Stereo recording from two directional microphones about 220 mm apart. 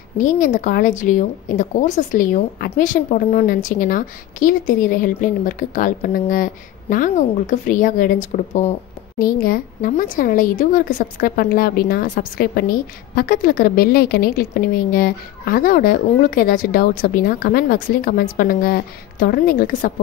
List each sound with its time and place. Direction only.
0.2 s a woman's voice: 35° left (ahead or behind)